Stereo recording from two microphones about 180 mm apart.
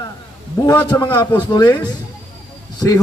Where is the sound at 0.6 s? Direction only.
20° left (ahead or behind).